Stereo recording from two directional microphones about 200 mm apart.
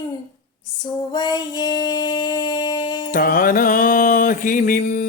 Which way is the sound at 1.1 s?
20° left (ahead or behind).